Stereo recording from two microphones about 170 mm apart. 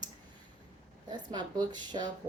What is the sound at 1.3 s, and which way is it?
Speech, 25° right (ahead or behind).